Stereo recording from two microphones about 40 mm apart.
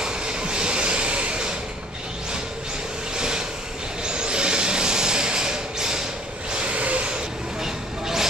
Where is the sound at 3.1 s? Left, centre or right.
Centre.